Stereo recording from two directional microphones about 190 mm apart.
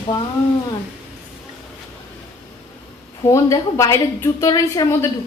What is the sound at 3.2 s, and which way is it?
A woman's voice, 15° left (ahead or behind).